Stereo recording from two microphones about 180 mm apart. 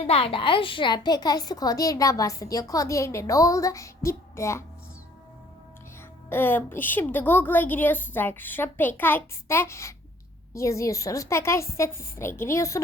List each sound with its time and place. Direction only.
0.0 s a woman's voice: 30° left (ahead or behind); by 4.6 s 15° left (ahead or behind)
6.3 s a woman's voice: 10° left (ahead or behind)